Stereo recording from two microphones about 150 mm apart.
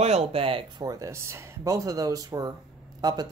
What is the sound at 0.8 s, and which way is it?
Speech, 20° right (ahead or behind).